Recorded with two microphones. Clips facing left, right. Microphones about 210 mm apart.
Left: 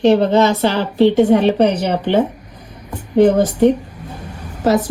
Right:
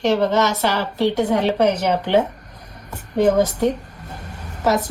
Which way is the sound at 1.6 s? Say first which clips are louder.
Left 3 dB; 60° left (ahead or behind).